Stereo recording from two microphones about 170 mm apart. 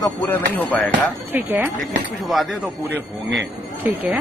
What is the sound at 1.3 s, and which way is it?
Speech, 10° right (ahead or behind).